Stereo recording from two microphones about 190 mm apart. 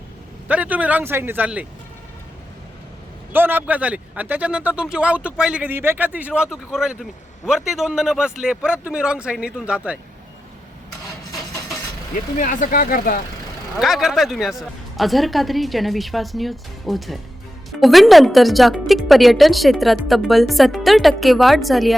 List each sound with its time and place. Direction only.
0.4 s speech: 10° right (ahead or behind)
3.3 s a man's voice: 10° right (ahead or behind)
12.4 s speech: 45° left (ahead or behind)
13.7 s a man's voice: centre (ahead or behind)